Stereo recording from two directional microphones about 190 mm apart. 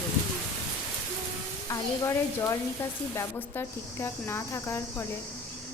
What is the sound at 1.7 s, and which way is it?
Cricket, 15° left (ahead or behind).